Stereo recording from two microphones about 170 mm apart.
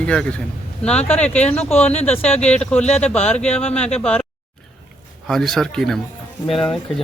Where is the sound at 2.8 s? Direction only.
40° left (ahead or behind).